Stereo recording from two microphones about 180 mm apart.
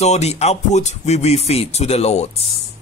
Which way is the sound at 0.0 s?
40° left (ahead or behind).